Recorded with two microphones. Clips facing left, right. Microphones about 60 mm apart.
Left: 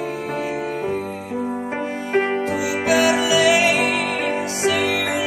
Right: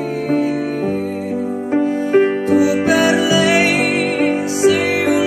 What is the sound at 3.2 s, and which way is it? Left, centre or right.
Music, right.